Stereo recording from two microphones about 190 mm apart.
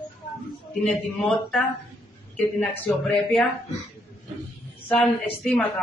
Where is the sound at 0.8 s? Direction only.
Centre (ahead or behind).